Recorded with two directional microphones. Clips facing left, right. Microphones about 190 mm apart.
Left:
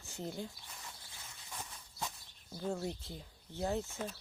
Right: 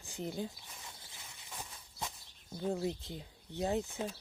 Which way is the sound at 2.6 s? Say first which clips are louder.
Right 3 dB; 20° right (ahead or behind).